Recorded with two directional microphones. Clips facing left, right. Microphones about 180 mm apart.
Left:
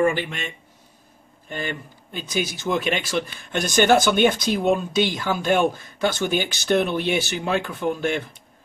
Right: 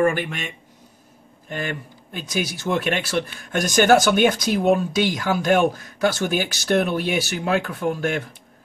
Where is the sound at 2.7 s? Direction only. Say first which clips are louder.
Right 2 dB; 5° right (ahead or behind).